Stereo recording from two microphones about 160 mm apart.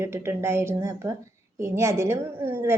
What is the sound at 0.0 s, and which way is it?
A woman's voice, 15° right (ahead or behind).